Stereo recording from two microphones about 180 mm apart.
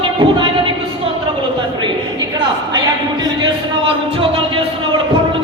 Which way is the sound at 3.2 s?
25° right (ahead or behind).